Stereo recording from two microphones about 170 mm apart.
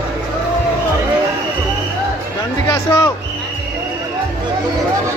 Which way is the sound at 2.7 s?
20° left (ahead or behind).